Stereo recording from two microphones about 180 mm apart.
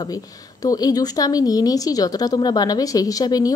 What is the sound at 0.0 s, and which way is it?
A woman's voice, 20° left (ahead or behind).